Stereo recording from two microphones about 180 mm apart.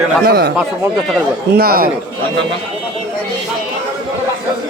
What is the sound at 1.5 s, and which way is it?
Speech, 55° right (ahead or behind).